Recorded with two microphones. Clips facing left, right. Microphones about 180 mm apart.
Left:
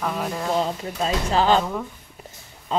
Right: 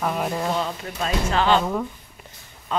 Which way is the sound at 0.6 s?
35° left (ahead or behind).